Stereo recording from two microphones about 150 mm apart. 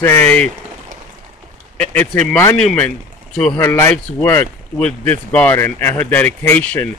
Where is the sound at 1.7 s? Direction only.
10° left (ahead or behind).